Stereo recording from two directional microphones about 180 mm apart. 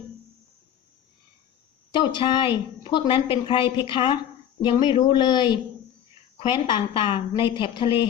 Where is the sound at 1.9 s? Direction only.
25° left (ahead or behind).